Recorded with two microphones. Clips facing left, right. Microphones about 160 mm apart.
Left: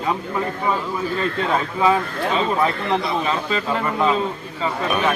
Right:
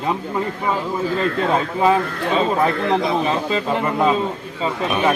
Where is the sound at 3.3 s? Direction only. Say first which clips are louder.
Right 2 dB; 20° right (ahead or behind).